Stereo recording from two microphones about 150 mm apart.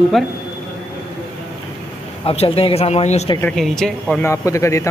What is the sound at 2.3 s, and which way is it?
Speech, 40° left (ahead or behind).